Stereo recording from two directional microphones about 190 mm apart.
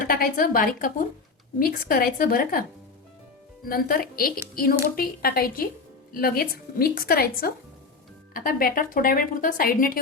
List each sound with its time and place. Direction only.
0.0 s a woman's voice: 50° left (ahead or behind)
3.7 s a woman's voice: 50° left (ahead or behind)